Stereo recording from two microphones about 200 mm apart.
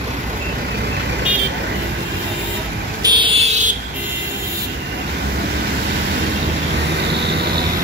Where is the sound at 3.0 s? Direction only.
25° right (ahead or behind).